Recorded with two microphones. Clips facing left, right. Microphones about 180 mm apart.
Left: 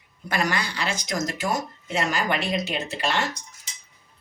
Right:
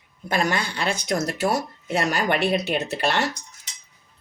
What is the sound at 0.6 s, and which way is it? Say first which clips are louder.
Speech: right 3 dB; 55° right (ahead or behind).